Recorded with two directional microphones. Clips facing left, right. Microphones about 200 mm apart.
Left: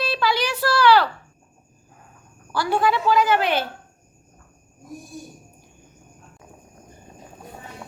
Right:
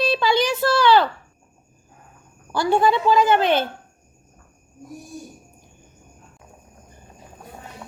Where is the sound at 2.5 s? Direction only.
25° right (ahead or behind).